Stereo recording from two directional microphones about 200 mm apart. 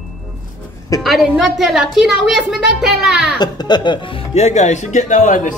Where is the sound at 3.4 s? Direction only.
20° left (ahead or behind); by 5.5 s 40° left (ahead or behind).